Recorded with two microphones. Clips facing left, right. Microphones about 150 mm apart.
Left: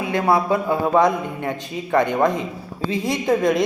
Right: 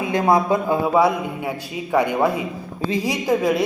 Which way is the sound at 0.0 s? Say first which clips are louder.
Right 1 dB; 15° right (ahead or behind).